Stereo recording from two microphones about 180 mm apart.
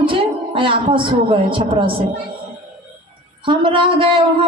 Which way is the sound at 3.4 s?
30° right (ahead or behind).